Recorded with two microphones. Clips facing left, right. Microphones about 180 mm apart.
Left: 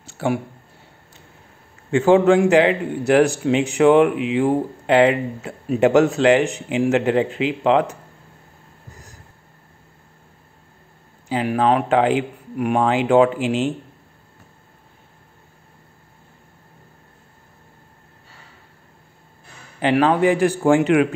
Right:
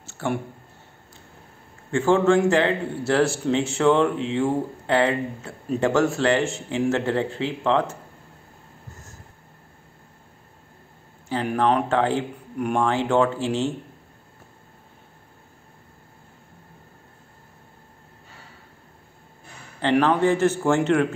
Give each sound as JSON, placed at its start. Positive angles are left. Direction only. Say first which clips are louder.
{"t": 0.2, "sound": "speech", "louder": "left 5 dB", "side_deg": 15}
{"t": 1.9, "sound": "speech", "louder": "left 5 dB", "side_deg": 20}
{"t": 11.2, "sound": "speech", "louder": "left 3 dB", "side_deg": 10}
{"t": 19.8, "sound": "speech", "louder": "left 3 dB", "side_deg": 10}